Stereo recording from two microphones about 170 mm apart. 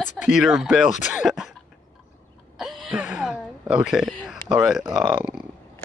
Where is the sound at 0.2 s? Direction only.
5° right (ahead or behind).